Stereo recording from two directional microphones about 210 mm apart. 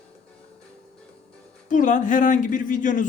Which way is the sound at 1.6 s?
40° left (ahead or behind).